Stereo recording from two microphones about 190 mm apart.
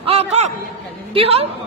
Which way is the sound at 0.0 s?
35° right (ahead or behind).